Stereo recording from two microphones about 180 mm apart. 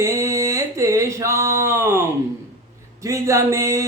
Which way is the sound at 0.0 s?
15° right (ahead or behind).